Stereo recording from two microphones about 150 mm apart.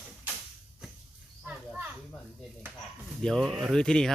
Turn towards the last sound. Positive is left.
turn(degrees=5)  # may be behind; listen again after turning